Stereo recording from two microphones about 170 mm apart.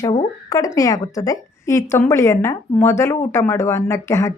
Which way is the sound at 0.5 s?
20° left (ahead or behind).